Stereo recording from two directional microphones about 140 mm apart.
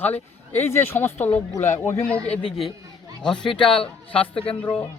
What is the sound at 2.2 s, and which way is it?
Speech, 45° left (ahead or behind).